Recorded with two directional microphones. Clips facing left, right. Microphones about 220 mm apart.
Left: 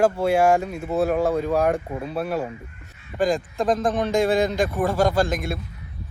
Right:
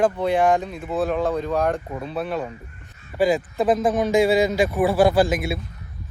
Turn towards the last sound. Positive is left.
turn(degrees=0)  # may be behind; listen again after turning